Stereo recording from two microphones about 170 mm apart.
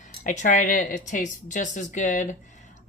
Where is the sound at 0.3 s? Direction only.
50° left (ahead or behind).